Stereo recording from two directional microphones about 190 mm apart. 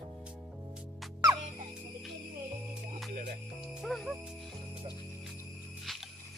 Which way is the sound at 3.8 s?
Centre (ahead or behind).